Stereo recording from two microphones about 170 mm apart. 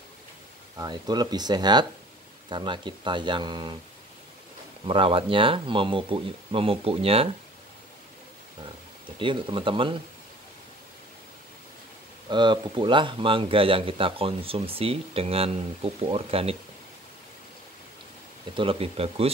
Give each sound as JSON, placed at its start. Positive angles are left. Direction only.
{"t": 0.7, "sound": "speech", "side_deg": -25}
{"t": 4.8, "sound": "speech", "side_deg": -30}
{"t": 9.2, "sound": "speech", "side_deg": -30}
{"t": 12.3, "sound": "speech", "side_deg": -25}
{"t": 18.6, "sound": "speech", "side_deg": -35}